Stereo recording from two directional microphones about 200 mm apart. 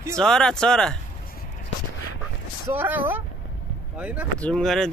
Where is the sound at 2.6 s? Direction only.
10° right (ahead or behind).